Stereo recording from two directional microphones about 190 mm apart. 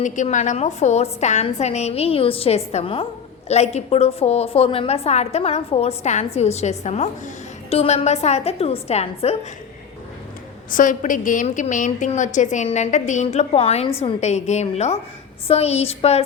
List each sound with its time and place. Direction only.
0.0 s a woman's voice: 40° left (ahead or behind)
10.7 s a woman's voice: 45° left (ahead or behind)